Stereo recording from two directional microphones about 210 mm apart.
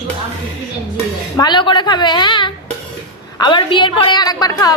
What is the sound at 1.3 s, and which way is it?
A woman's voice, 20° left (ahead or behind).